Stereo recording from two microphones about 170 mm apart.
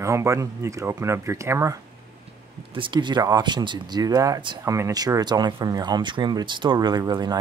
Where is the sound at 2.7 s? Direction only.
30° right (ahead or behind).